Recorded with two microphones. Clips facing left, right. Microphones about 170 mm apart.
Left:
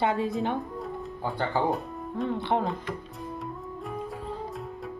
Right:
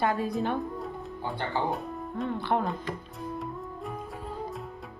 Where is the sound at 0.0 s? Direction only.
25° left (ahead or behind).